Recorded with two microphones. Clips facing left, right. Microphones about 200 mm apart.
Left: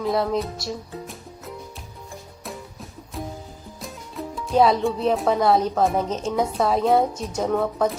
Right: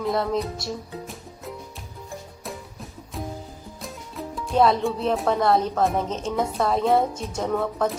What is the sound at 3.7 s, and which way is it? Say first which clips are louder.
Speech: left 2 dB; centre (ahead or behind).